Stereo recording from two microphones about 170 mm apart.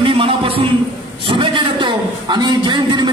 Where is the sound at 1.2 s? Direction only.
30° right (ahead or behind).